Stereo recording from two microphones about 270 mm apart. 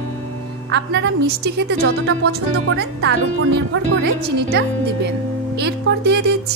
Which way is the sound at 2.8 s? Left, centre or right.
Right.